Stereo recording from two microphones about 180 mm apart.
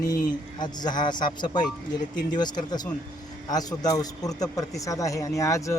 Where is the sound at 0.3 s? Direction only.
25° left (ahead or behind).